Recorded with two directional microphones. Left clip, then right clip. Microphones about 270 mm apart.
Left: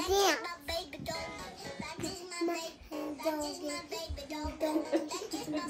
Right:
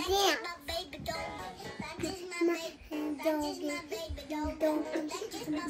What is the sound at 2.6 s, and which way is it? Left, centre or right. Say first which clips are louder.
Child singing: right 2 dB; right.